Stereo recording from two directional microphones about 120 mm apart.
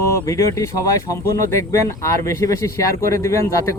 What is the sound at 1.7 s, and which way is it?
Speech, 25° left (ahead or behind).